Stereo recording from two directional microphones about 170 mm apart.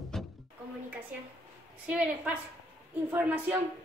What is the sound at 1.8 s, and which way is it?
A woman's voice, 5° right (ahead or behind).